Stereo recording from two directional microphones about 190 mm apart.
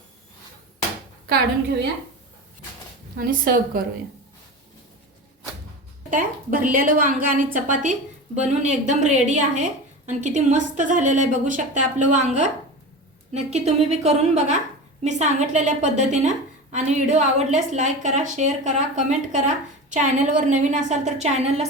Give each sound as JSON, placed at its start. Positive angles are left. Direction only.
{"t": 3.2, "sound": "a woman's voice", "side_deg": -50}
{"t": 6.1, "sound": "a woman's voice", "side_deg": -45}